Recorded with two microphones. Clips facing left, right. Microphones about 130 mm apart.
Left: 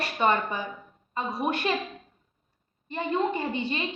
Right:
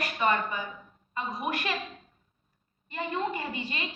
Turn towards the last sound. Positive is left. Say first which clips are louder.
# left 6 dB
turn(degrees=25)  # may be behind; listen again after turning